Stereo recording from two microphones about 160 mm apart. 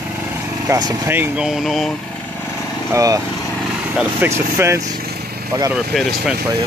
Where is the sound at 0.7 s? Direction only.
20° right (ahead or behind).